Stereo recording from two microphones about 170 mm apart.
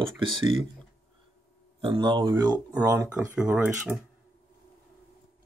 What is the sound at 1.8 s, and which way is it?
Speech, 30° right (ahead or behind).